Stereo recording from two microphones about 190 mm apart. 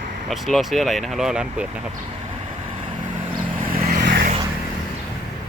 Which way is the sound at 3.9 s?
55° right (ahead or behind).